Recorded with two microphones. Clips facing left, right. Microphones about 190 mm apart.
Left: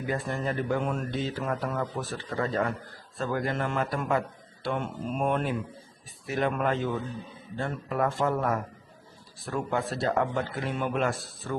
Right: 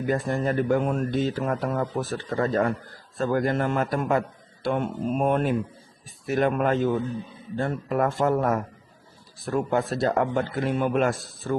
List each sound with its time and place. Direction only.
0.1 s speech: 45° right (ahead or behind)